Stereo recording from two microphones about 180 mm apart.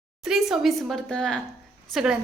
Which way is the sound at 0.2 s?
Centre (ahead or behind).